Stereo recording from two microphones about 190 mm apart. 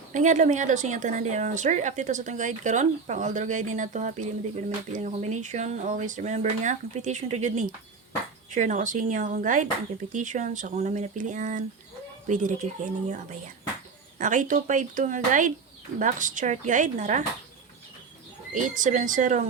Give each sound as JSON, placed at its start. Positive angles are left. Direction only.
{"t": 0.1, "sound": "a woman's voice", "side_deg": -40}
{"t": 18.5, "sound": "speech", "side_deg": -40}